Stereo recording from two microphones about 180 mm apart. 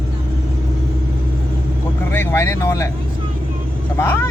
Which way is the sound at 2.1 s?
10° left (ahead or behind).